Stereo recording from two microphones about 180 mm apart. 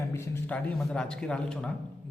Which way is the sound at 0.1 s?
10° left (ahead or behind).